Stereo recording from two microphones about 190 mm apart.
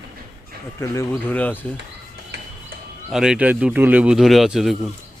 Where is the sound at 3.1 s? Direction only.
5° right (ahead or behind).